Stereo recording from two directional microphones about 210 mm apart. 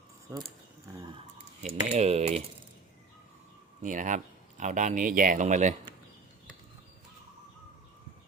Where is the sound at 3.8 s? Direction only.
35° right (ahead or behind).